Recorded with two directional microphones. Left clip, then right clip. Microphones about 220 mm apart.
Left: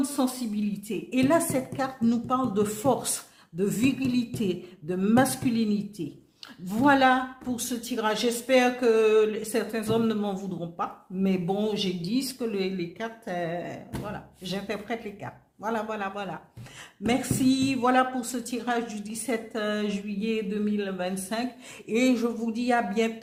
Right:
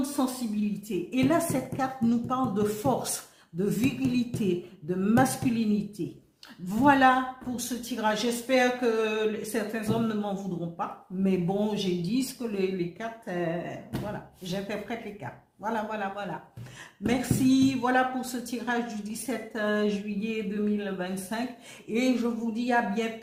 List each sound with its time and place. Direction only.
0.2 s a woman's voice: 45° left (ahead or behind)